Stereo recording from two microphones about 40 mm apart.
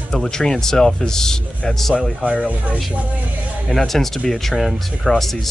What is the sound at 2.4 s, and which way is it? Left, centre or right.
Speech, right.